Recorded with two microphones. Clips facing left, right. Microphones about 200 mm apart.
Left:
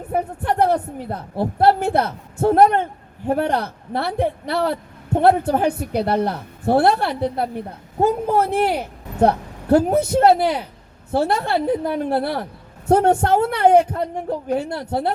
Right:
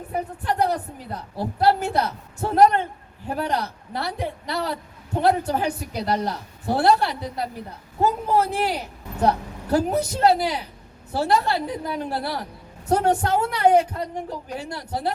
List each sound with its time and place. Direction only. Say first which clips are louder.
0.1 s a woman's voice: left 5 dB; 55° left (ahead or behind)